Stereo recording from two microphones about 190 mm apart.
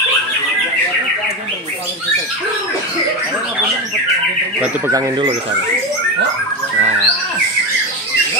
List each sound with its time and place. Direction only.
4.6 s speech: 10° right (ahead or behind)
6.8 s squawk: 35° right (ahead or behind)